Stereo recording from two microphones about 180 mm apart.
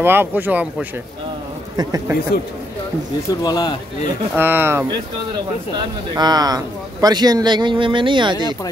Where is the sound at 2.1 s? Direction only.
15° right (ahead or behind).